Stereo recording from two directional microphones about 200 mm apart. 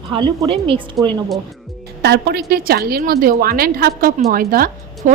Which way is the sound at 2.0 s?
55° right (ahead or behind).